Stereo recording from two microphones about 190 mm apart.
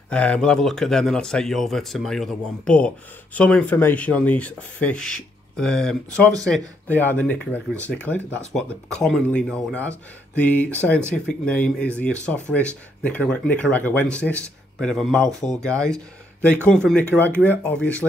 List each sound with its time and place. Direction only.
0.1 s speech: 5° left (ahead or behind)